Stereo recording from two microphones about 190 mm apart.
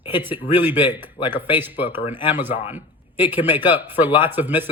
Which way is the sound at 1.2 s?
35° left (ahead or behind).